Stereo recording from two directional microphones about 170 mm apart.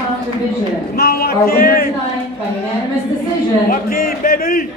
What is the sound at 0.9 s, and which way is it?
Speech, 65° left (ahead or behind).